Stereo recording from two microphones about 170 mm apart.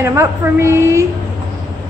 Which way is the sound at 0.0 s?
15° right (ahead or behind).